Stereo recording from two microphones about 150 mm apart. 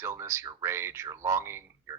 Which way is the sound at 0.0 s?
15° right (ahead or behind).